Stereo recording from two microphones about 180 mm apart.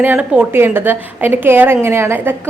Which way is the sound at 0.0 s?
10° right (ahead or behind).